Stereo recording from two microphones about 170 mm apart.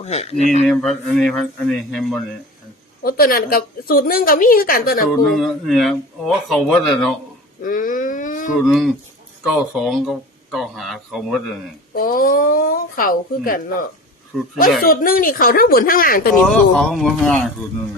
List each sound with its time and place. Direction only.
0.0 s speech: 40° left (ahead or behind)
0.7 s speech: centre (ahead or behind)
3.0 s a woman's voice: 60° left (ahead or behind)
5.2 s speech: centre (ahead or behind)
7.6 s wail: 55° left (ahead or behind)
8.6 s speech: centre (ahead or behind)
11.9 s a woman's voice: 60° left (ahead or behind)
14.3 s speech: centre (ahead or behind)
14.8 s a woman's voice: 60° left (ahead or behind)
16.5 s speech: 5° left (ahead or behind)